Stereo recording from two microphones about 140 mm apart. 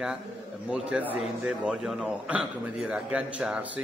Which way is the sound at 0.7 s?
5° right (ahead or behind).